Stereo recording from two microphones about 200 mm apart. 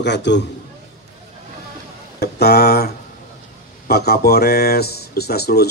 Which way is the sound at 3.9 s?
55° left (ahead or behind).